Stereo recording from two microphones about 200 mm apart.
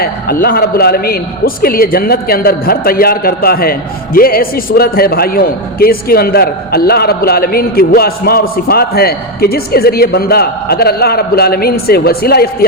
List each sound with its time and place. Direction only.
0.0 s a man's voice: 50° left (ahead or behind)